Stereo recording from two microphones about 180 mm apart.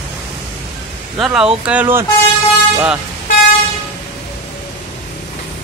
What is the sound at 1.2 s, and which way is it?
Speech, 5° right (ahead or behind).